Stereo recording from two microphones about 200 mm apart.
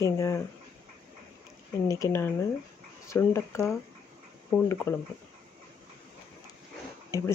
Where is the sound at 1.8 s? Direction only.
15° left (ahead or behind).